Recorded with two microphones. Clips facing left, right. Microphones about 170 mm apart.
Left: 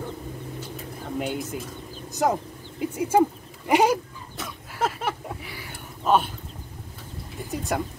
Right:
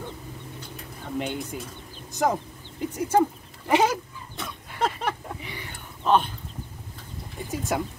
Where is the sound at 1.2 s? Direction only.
5° left (ahead or behind).